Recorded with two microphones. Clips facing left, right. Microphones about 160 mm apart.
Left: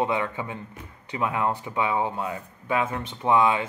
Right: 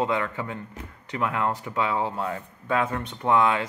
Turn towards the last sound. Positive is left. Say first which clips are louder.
# left 1 dB
turn(degrees=15)  # may be behind; listen again after turning